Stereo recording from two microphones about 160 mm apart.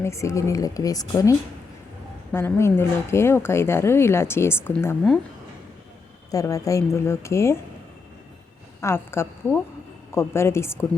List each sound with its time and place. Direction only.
0.0 s a woman's voice: 20° left (ahead or behind)
6.3 s speech: 20° left (ahead or behind)
8.8 s speech: 15° left (ahead or behind)